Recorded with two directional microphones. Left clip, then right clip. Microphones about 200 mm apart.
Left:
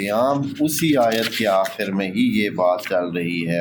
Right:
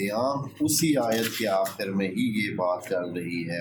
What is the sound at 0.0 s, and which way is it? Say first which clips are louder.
Speech: left 8 dB; 40° left (ahead or behind).